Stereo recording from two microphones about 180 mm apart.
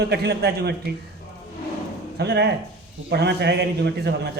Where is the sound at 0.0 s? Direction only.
70° right (ahead or behind).